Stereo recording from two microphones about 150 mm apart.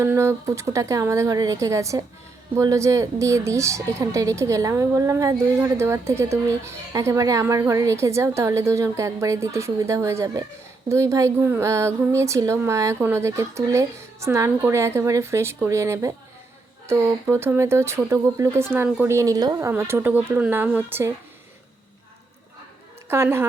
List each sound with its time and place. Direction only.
0.0 s speech: 15° right (ahead or behind)
23.0 s speech: 20° right (ahead or behind)